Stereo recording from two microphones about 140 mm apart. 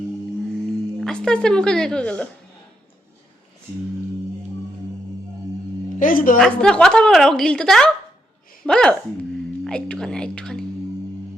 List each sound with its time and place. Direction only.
1.0 s speech: 5° left (ahead or behind)
6.0 s a woman's voice: 80° left
6.4 s speech: 5° left (ahead or behind)